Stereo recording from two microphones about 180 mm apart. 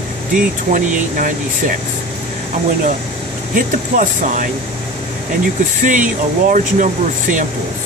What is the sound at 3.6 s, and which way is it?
Speech, 45° right (ahead or behind).